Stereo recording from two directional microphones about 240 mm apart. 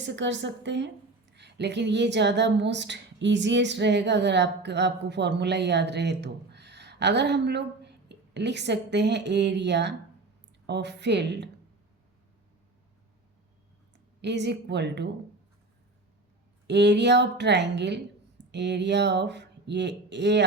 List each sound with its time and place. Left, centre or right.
0.0 s a woman's voice: right
14.2 s a woman's voice: right
16.6 s a woman's voice: right